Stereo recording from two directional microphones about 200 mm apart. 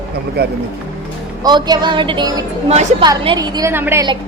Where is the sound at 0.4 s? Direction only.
50° right (ahead or behind).